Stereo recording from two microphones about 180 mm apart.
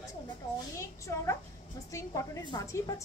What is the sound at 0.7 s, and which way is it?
A woman's voice, 15° left (ahead or behind).